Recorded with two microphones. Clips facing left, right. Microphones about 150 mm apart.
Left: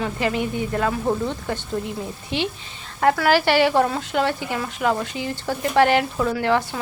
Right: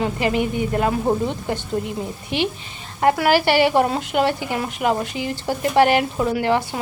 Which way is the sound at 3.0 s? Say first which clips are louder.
Right 1 dB; 10° right (ahead or behind).